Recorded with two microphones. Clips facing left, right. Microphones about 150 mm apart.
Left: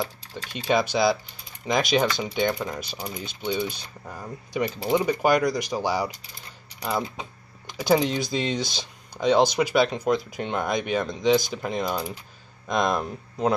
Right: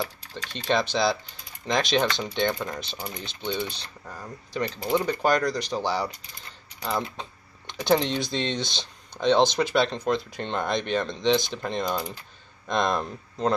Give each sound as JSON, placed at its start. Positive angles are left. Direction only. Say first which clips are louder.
{"t": 0.5, "sound": "speech", "louder": "left 2 dB", "side_deg": 10}